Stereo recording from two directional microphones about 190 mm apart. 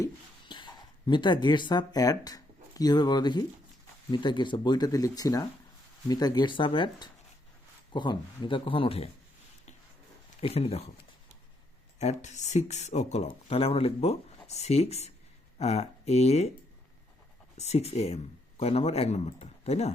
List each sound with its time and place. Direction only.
0.0 s a sound: 25° left (ahead or behind)
4.1 s speech: 25° left (ahead or behind)
10.4 s speech: 30° left (ahead or behind)
11.9 s speech: 35° left (ahead or behind)
17.6 s speech: 35° left (ahead or behind)